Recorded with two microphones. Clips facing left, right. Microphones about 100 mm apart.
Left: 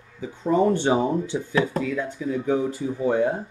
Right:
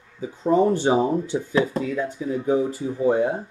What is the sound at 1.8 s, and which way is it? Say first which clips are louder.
Speech: right 1 dB; 30° right (ahead or behind).